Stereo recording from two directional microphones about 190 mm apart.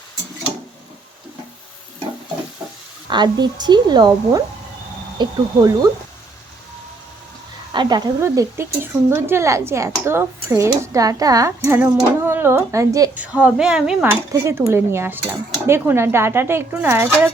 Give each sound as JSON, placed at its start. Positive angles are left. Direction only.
{"t": 3.1, "sound": "speech", "side_deg": -25}
{"t": 7.7, "sound": "speech", "side_deg": -25}
{"t": 13.2, "sound": "speech", "side_deg": -5}